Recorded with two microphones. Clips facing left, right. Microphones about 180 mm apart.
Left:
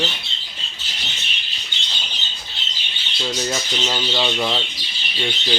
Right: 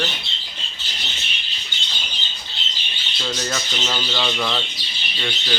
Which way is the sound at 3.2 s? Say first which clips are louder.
Left 2 dB; 15° left (ahead or behind).